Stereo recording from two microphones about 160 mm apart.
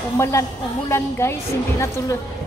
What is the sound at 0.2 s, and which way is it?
A woman's voice, 15° left (ahead or behind).